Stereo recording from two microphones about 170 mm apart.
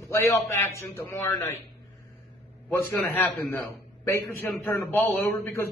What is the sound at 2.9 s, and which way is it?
A man's voice, 10° left (ahead or behind).